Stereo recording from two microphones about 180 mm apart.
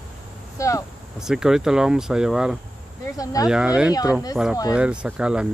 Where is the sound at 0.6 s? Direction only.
15° left (ahead or behind).